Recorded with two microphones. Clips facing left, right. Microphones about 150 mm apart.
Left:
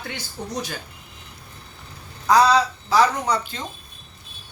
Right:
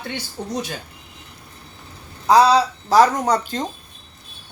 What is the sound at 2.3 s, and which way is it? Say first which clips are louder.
Speech: right 3 dB; 30° right (ahead or behind).